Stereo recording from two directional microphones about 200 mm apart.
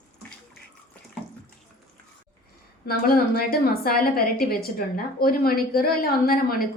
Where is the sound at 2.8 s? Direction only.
50° left (ahead or behind).